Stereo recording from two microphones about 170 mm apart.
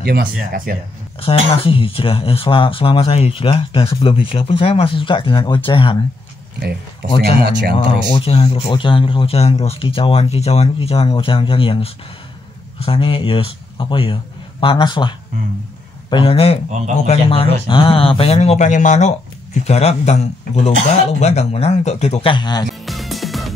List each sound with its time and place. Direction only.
0.0 s speech: 70° right (ahead or behind)
1.2 s speech: 35° left (ahead or behind)
7.2 s speech: 65° right (ahead or behind)
7.7 s speech: 30° left (ahead or behind)
22.8 s music: centre (ahead or behind)